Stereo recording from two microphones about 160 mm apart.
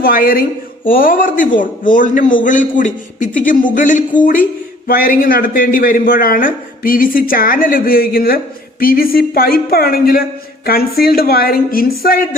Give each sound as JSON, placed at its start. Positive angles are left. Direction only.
{"t": 0.0, "sound": "a man's voice", "side_deg": 65}